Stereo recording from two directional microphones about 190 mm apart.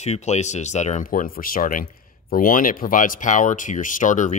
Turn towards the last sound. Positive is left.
turn(degrees=40)  # may be behind; listen again after turning